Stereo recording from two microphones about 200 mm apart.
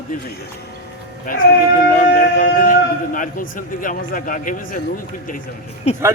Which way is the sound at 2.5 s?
40° left (ahead or behind).